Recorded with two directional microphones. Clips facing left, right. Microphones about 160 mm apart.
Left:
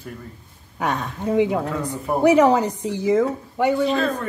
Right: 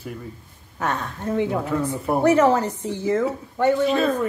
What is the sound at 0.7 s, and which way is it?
Speech, 15° left (ahead or behind).